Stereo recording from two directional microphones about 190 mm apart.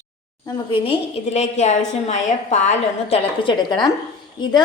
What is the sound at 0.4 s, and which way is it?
A woman's voice, 25° left (ahead or behind).